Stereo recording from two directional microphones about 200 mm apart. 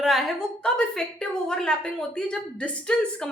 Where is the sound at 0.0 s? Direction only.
Centre (ahead or behind).